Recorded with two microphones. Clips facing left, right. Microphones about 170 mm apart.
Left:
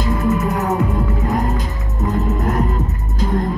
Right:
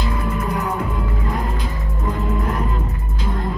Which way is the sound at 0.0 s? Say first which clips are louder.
Left 6 dB; 45° left (ahead or behind).